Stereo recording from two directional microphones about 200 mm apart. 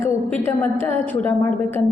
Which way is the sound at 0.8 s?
10° left (ahead or behind).